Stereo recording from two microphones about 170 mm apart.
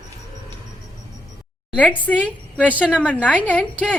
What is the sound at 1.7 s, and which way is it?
A woman's voice, 10° left (ahead or behind).